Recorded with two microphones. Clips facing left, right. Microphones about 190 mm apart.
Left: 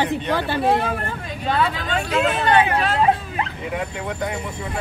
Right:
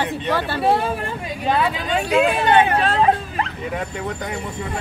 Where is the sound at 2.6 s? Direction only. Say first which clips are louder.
Right 2 dB; 30° right (ahead or behind).